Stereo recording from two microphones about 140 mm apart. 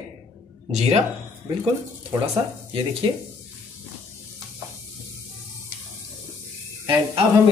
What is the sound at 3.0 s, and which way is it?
Speech, 35° right (ahead or behind).